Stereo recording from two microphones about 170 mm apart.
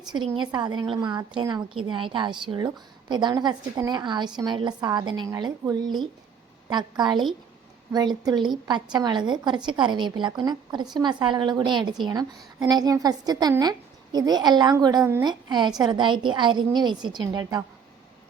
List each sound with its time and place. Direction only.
0.0 s a woman's voice: 25° right (ahead or behind)